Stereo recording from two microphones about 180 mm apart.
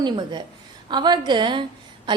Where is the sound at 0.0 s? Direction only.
25° right (ahead or behind).